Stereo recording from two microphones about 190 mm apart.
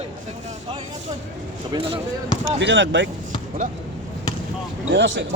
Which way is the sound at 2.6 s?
75° right (ahead or behind).